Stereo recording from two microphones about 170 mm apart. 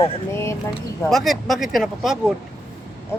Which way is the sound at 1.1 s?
Centre (ahead or behind).